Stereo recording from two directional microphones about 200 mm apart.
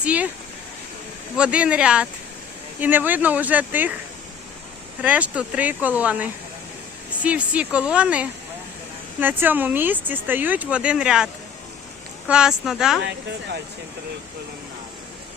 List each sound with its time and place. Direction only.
0.0 s speech: 5° right (ahead or behind)
1.4 s speech: 5° right (ahead or behind)
5.0 s speech: 5° right (ahead or behind)
12.3 s speech: 5° right (ahead or behind)
13.0 s speech: 60° right (ahead or behind)